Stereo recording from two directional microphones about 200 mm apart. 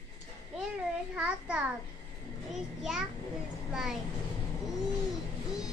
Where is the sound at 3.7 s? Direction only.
5° right (ahead or behind).